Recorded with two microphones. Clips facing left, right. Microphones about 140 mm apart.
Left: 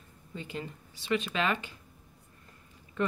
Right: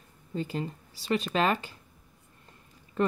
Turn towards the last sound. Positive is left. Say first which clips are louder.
# right 4 dB
turn(degrees=-35)  # may be behind; listen again after turning